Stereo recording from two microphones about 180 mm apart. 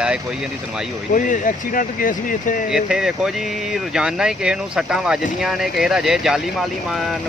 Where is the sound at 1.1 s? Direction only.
45° left (ahead or behind).